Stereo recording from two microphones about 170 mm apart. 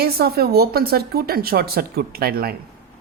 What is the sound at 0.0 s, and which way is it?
A woman's voice, 65° right (ahead or behind).